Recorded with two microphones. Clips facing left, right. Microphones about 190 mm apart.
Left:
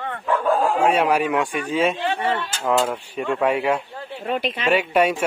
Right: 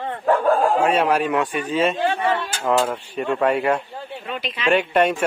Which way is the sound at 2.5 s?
10° right (ahead or behind).